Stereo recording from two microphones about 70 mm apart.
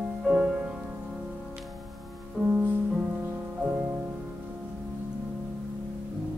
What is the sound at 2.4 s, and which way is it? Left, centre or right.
Music, right.